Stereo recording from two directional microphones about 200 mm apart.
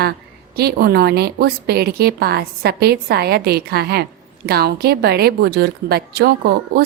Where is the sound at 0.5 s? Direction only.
50° right (ahead or behind).